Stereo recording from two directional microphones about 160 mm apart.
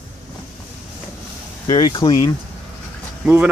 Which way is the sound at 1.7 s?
25° left (ahead or behind).